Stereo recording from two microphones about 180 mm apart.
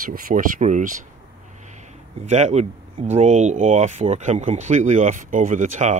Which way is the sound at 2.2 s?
40° right (ahead or behind).